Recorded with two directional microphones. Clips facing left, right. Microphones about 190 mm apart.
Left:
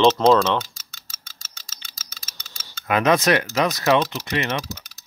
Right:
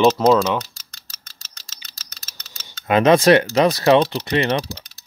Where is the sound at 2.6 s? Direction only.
30° right (ahead or behind).